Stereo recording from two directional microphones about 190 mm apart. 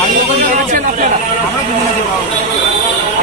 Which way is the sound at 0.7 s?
45° right (ahead or behind).